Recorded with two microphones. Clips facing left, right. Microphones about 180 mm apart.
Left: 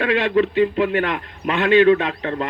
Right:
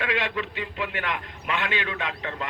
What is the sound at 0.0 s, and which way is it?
A man's voice, 35° left (ahead or behind).